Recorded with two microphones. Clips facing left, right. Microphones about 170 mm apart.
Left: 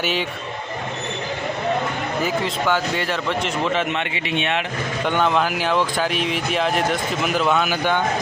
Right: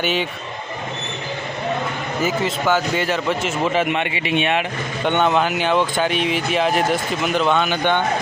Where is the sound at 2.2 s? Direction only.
Centre (ahead or behind).